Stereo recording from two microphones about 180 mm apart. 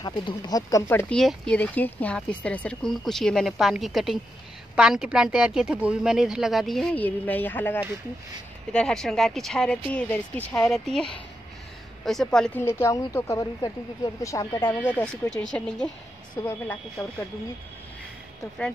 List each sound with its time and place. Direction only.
0.0 s a woman's voice: 20° left (ahead or behind); by 15.9 s 5° left (ahead or behind)
16.4 s a woman's voice: 15° left (ahead or behind)